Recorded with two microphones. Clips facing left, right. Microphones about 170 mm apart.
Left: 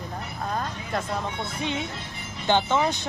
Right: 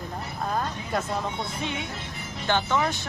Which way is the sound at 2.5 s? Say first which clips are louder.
Left 3 dB; 20° left (ahead or behind).